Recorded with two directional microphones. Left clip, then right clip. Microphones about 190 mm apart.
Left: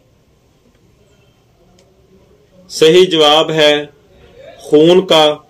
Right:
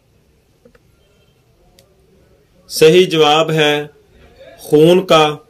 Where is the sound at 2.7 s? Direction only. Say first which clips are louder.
Left 1 dB; 50° right (ahead or behind).